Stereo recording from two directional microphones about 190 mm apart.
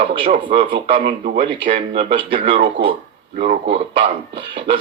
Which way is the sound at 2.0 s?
25° right (ahead or behind).